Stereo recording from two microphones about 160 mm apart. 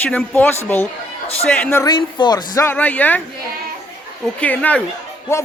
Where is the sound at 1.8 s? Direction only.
25° left (ahead or behind).